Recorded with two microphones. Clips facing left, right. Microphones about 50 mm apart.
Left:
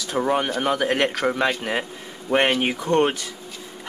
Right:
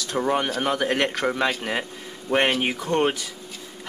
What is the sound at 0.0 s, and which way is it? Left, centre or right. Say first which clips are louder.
Speech: left 1 dB; centre.